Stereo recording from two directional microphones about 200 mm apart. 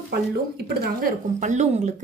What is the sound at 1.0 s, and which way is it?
Speech, 35° right (ahead or behind).